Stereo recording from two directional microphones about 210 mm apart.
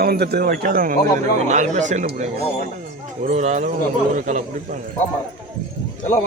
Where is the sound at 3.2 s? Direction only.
35° right (ahead or behind).